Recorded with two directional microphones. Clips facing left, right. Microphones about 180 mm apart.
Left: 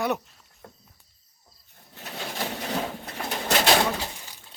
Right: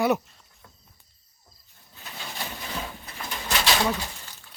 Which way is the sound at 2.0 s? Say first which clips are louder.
Left 5 dB; 65° left (ahead or behind).